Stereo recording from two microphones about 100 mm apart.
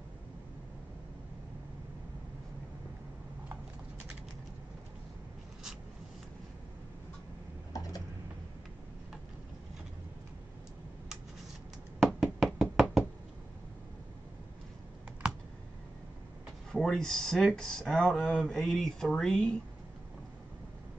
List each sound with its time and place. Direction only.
7.7 s a sound: 40° left (ahead or behind)
12.0 s knock: centre (ahead or behind)
15.2 s computer keyboard: 10° right (ahead or behind)
16.7 s speech: 5° left (ahead or behind)